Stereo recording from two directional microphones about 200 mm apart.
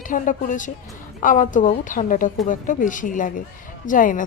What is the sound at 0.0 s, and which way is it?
A woman's voice, 40° left (ahead or behind).